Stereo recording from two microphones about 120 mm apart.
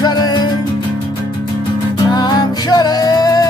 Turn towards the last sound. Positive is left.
turn(degrees=30)  # may be behind; listen again after turning